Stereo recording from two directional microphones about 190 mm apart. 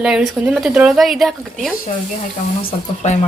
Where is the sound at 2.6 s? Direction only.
35° left (ahead or behind).